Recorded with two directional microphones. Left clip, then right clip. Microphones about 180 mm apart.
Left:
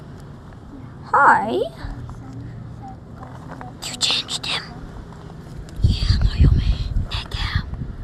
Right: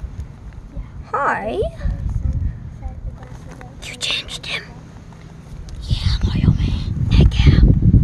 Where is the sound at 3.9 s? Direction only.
50° right (ahead or behind).